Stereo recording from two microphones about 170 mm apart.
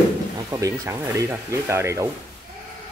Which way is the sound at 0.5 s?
20° right (ahead or behind).